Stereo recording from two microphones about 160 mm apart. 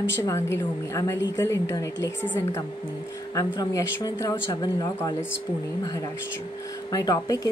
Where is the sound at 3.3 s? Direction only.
20° left (ahead or behind).